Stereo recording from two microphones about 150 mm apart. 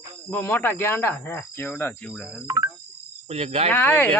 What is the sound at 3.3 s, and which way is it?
Speech, 45° right (ahead or behind).